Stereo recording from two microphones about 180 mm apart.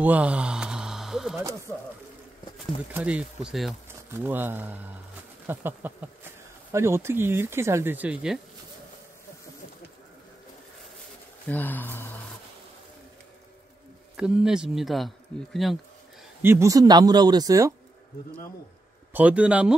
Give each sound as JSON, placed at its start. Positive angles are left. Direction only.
{"t": 0.0, "sound": "a sound", "side_deg": -10}
{"t": 1.7, "sound": "speech", "side_deg": 10}
{"t": 2.9, "sound": "speech", "side_deg": -5}
{"t": 11.4, "sound": "speech", "side_deg": 10}
{"t": 14.1, "sound": "speech", "side_deg": -5}
{"t": 16.4, "sound": "speech", "side_deg": -15}
{"t": 19.1, "sound": "speech", "side_deg": -5}